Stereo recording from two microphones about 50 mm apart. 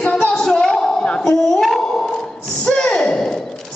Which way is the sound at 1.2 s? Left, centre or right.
Centre.